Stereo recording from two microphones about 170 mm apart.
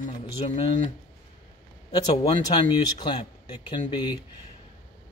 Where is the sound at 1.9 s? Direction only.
30° left (ahead or behind).